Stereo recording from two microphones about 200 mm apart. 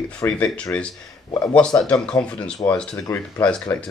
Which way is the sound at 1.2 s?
20° left (ahead or behind).